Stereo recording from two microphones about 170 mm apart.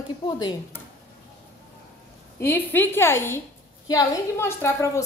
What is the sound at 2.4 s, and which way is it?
A woman's voice, 15° left (ahead or behind).